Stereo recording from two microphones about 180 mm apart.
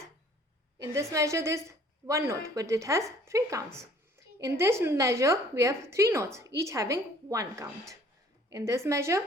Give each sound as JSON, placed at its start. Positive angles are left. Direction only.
{"t": 0.8, "sound": "a woman's voice", "side_deg": -15}